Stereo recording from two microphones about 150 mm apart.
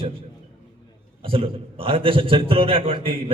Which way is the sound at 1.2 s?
40° right (ahead or behind).